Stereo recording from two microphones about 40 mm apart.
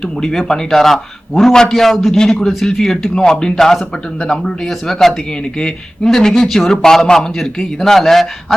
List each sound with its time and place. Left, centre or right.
0.2 s speech: centre
2.1 s speech: centre